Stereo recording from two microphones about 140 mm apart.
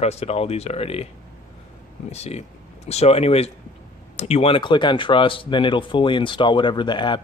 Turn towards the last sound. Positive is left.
turn(degrees=35)  # may be behind; listen again after turning